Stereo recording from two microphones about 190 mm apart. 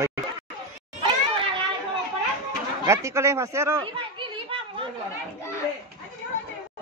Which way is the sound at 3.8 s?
25° right (ahead or behind).